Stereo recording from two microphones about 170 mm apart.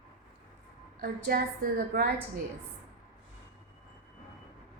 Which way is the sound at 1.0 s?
60° right (ahead or behind).